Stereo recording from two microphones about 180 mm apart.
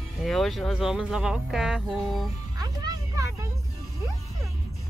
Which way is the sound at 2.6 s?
20° right (ahead or behind).